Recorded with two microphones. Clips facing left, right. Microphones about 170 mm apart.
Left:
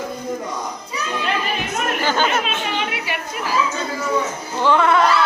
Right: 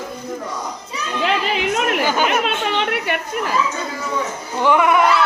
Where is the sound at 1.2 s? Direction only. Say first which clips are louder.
Right 6 dB; 85° right.